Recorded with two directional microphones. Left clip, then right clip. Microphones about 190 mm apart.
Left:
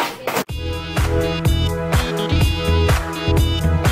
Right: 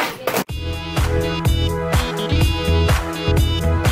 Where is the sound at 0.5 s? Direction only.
Centre (ahead or behind).